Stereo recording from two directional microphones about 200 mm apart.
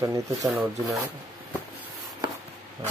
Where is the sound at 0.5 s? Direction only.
Centre (ahead or behind).